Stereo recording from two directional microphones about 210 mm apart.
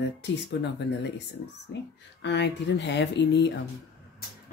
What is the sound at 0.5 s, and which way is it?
Speech, 55° left (ahead or behind).